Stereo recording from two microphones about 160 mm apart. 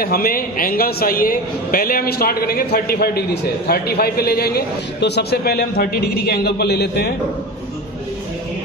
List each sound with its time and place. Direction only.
0.0 s a man's voice: 65° left (ahead or behind); by 7.2 s 90° left